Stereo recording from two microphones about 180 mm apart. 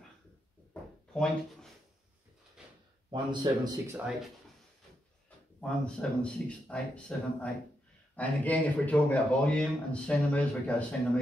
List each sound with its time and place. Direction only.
1.1 s speech: 5° left (ahead or behind)
3.1 s speech: 25° right (ahead or behind)
5.6 s speech: 5° left (ahead or behind)